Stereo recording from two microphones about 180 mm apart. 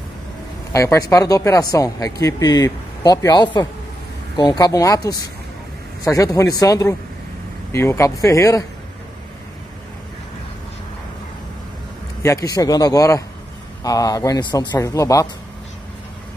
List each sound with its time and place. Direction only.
0.7 s a man's voice: 20° left (ahead or behind)
12.2 s speech: 15° left (ahead or behind)